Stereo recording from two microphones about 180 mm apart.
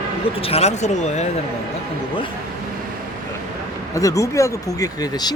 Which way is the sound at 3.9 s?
20° left (ahead or behind).